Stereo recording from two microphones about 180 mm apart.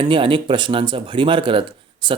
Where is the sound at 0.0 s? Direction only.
30° right (ahead or behind).